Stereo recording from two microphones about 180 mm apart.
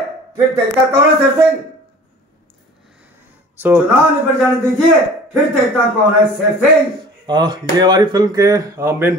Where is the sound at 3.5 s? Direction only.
10° right (ahead or behind).